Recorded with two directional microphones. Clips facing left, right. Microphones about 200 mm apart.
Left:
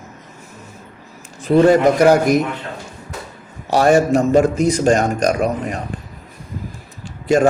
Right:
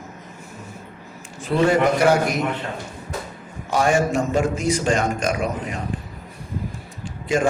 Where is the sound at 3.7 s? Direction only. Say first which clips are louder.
Left 6 dB; 40° left (ahead or behind).